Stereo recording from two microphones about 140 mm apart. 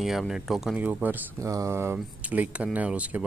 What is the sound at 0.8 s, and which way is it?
Speech, 15° right (ahead or behind).